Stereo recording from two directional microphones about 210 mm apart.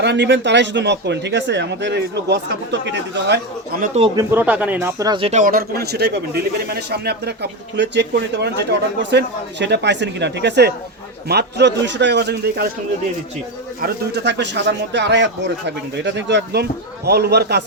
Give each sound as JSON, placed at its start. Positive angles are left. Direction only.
{"t": 0.0, "sound": "a man's voice", "side_deg": -55}
{"t": 3.9, "sound": "speech", "side_deg": -25}
{"t": 4.2, "sound": "a man's voice", "side_deg": -10}
{"t": 13.8, "sound": "a man's voice", "side_deg": -55}